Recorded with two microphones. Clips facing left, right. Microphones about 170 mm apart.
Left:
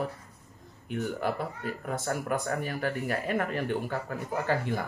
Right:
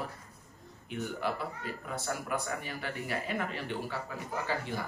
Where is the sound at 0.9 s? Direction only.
50° left (ahead or behind).